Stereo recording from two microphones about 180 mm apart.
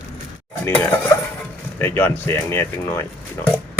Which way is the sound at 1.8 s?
15° left (ahead or behind).